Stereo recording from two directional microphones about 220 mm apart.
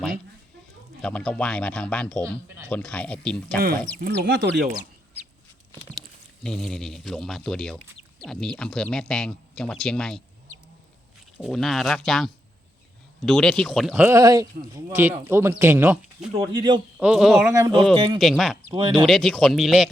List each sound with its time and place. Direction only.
1.0 s speech: 5° left (ahead or behind)
4.0 s speech: 50° right (ahead or behind)
6.4 s speech: centre (ahead or behind)
11.3 s speech: centre (ahead or behind)
16.4 s speech: 20° right (ahead or behind)
17.0 s speech: 5° right (ahead or behind)
17.5 s speech: 15° right (ahead or behind)
18.2 s speech: centre (ahead or behind)
18.7 s speech: 20° right (ahead or behind)
19.0 s speech: centre (ahead or behind)